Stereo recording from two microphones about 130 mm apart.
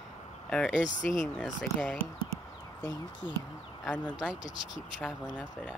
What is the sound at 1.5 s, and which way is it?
Speech, centre (ahead or behind).